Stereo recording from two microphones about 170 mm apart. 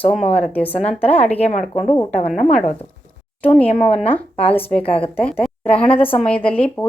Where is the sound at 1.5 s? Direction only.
40° left (ahead or behind).